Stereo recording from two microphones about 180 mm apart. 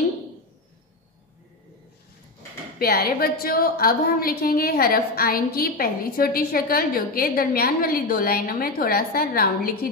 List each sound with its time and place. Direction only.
2.8 s a woman's voice: 60° left (ahead or behind)